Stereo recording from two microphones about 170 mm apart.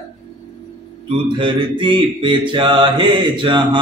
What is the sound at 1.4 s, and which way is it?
Mantra, 30° right (ahead or behind).